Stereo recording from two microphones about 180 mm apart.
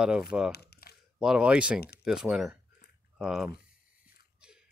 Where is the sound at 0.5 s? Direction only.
65° left (ahead or behind).